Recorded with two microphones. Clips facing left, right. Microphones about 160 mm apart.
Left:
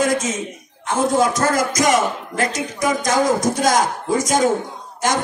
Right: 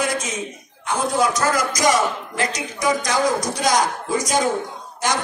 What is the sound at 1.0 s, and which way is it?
A man's voice, 50° left (ahead or behind).